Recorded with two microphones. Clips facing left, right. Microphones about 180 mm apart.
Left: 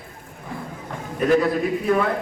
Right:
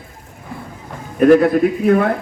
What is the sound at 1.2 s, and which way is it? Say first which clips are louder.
Speech: right 8 dB; 55° right (ahead or behind).